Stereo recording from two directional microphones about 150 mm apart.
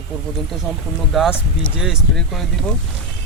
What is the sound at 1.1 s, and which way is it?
Speech, 5° right (ahead or behind).